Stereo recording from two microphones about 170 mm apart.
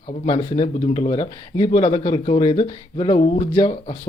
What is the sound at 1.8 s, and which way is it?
A man's voice, 35° left (ahead or behind).